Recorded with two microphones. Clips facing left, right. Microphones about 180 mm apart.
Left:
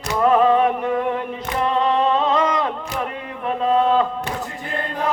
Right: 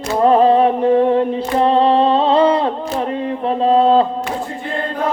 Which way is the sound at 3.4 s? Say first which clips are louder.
Right 5 dB; 30° right (ahead or behind).